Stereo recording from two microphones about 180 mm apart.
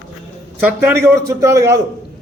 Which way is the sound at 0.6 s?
10° right (ahead or behind).